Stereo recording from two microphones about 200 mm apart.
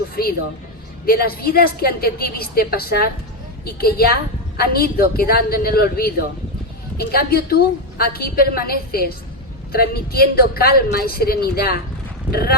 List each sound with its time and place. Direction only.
0.2 s a woman's voice: 50° left (ahead or behind)